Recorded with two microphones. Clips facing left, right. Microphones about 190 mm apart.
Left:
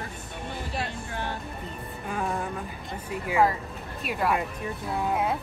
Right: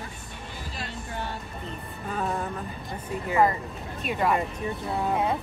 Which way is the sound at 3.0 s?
10° left (ahead or behind).